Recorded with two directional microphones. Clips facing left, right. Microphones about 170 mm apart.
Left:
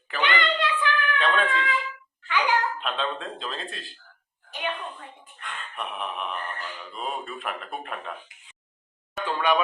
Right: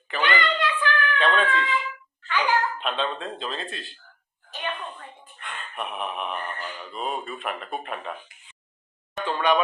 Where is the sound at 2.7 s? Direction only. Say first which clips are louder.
Right 2 dB; centre (ahead or behind).